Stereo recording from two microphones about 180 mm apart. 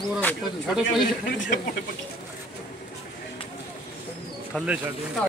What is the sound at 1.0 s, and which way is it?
Speech, 55° left (ahead or behind).